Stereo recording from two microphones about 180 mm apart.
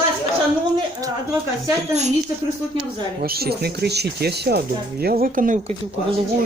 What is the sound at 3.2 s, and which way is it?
Speech, 60° right (ahead or behind).